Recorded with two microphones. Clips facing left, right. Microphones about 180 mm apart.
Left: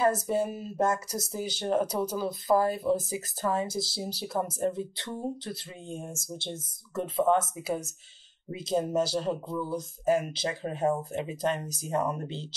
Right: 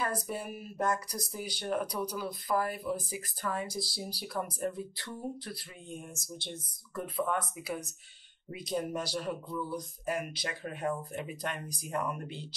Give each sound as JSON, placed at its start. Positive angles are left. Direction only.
{"t": 0.0, "sound": "speech", "side_deg": 25}